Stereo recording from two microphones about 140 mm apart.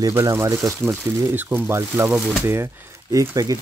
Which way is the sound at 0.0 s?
20° right (ahead or behind).